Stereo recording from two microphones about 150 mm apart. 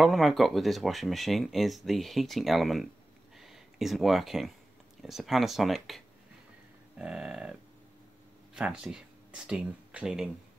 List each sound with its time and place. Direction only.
0.0 s speech: centre (ahead or behind)
3.3 s a sound: centre (ahead or behind)
5.0 s speech: centre (ahead or behind)
8.5 s speech: 5° right (ahead or behind)